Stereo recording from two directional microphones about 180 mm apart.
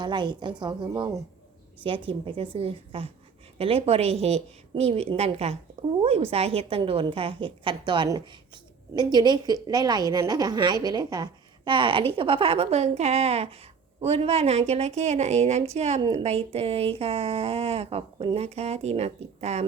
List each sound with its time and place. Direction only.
0.0 s a woman's voice: 25° right (ahead or behind)